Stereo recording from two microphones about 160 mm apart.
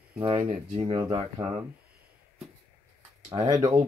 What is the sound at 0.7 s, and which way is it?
Speech, 30° right (ahead or behind).